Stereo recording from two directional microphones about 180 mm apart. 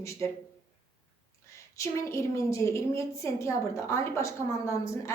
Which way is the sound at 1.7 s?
15° left (ahead or behind).